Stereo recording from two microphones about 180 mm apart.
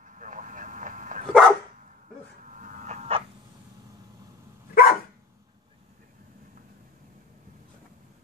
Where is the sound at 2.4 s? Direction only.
45° right (ahead or behind).